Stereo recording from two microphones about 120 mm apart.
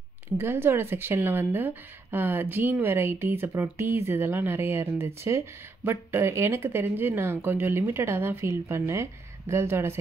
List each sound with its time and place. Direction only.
0.4 s a woman's voice: 20° right (ahead or behind)